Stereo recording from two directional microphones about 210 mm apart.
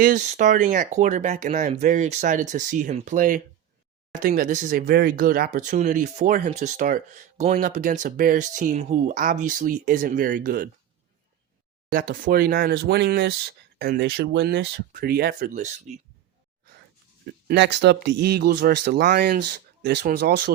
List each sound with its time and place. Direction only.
0.0 s speech: 40° right (ahead or behind)
11.9 s speech: 45° right (ahead or behind)
17.5 s speech: 55° right (ahead or behind)